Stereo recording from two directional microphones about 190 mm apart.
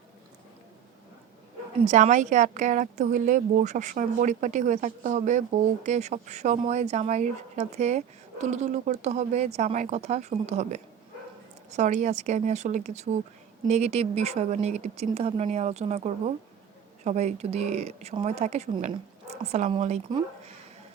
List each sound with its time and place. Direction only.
1.8 s a woman's voice: 40° right (ahead or behind)